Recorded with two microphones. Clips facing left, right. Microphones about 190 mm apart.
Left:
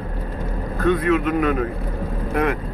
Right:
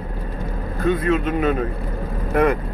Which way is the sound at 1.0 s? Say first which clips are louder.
Left 1 dB; 30° right (ahead or behind).